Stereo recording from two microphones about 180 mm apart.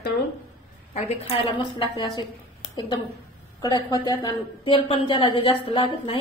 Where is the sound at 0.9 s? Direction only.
35° left (ahead or behind).